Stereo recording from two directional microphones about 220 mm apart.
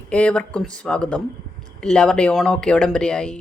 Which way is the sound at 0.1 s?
5° left (ahead or behind).